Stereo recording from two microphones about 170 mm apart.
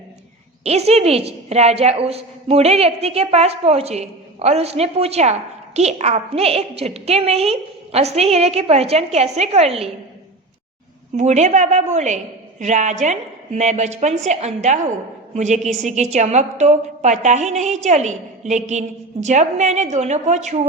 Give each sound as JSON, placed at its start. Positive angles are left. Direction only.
{"t": 0.6, "sound": "a woman's voice", "side_deg": -40}
{"t": 11.2, "sound": "a woman's voice", "side_deg": -45}